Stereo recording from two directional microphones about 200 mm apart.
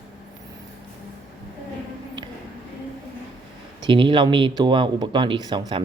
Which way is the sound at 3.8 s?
25° right (ahead or behind).